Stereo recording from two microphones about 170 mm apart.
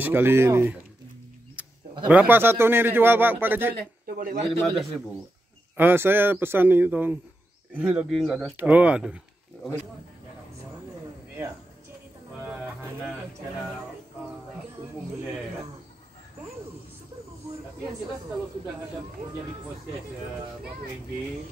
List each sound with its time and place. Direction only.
0.0 s a man's voice: 15° right (ahead or behind)
1.6 s a sound: 10° right (ahead or behind)
2.0 s a man's voice: 10° right (ahead or behind)
4.0 s a man's voice: 55° right (ahead or behind)
4.5 s speech: centre (ahead or behind)
5.8 s a man's voice: 10° right (ahead or behind)